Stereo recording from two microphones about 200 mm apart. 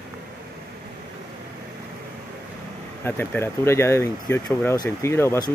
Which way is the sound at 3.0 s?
10° left (ahead or behind).